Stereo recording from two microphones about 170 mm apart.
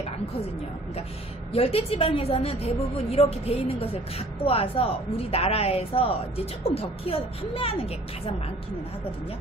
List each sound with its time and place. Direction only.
1.5 s speech: 35° left (ahead or behind)